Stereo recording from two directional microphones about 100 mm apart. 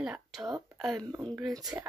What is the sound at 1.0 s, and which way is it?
Speech, 40° right (ahead or behind).